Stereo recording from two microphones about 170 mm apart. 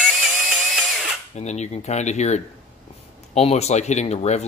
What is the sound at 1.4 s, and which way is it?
Speech, 40° left (ahead or behind).